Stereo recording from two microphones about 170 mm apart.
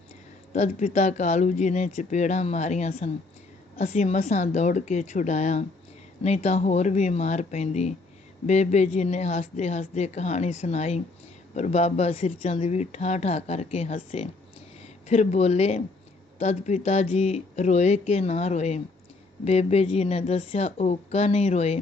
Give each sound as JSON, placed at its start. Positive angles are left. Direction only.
{"t": 0.5, "sound": "speech", "side_deg": 40}